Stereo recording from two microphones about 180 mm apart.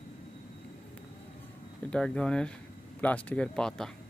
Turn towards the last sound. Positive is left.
turn(degrees=5)  # may be behind; listen again after turning